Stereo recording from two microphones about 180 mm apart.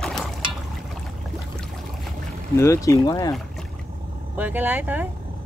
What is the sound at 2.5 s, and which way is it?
Speech, 15° left (ahead or behind).